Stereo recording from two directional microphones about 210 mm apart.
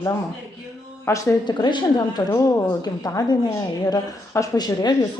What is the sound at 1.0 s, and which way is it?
A woman's voice, 15° left (ahead or behind).